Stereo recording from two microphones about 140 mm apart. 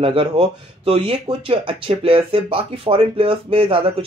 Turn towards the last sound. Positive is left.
turn(degrees=-40)  # may be behind; listen again after turning